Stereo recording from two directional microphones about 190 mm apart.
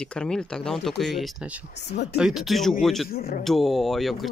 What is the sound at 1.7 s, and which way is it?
Speech, 65° left (ahead or behind).